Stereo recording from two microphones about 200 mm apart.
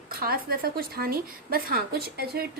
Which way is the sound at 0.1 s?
50° right (ahead or behind).